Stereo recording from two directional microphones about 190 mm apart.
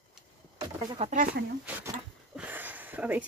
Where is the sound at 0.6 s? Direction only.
30° right (ahead or behind).